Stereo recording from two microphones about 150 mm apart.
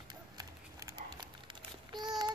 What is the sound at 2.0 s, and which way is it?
Child singing, 30° right (ahead or behind).